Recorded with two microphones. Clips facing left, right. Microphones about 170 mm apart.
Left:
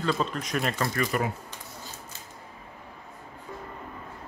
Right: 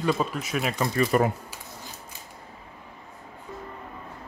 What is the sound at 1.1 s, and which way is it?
Speech, 40° right (ahead or behind).